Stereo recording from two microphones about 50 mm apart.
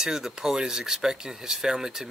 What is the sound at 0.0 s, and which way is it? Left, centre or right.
Speech, centre.